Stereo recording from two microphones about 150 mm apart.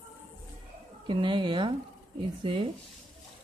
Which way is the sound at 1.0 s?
30° right (ahead or behind).